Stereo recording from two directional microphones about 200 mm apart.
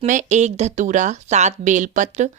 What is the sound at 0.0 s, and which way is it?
A woman's voice, 40° right (ahead or behind).